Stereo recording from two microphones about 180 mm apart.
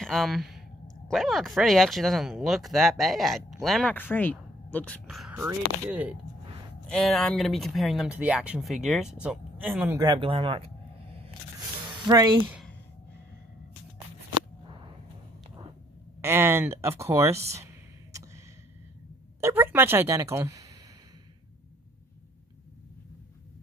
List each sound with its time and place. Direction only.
0.0 s speech: centre (ahead or behind)
5.3 s speech: 15° right (ahead or behind)
6.9 s speech: 5° left (ahead or behind)
9.9 s a sound: 25° right (ahead or behind)
11.9 s speech: 20° right (ahead or behind)
16.2 s speech: 15° right (ahead or behind)
19.4 s speech: 10° right (ahead or behind)